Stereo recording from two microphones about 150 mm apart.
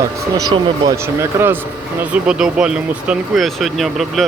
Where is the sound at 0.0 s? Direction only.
25° right (ahead or behind).